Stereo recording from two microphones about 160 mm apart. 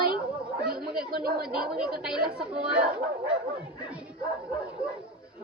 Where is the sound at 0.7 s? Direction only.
70° right (ahead or behind).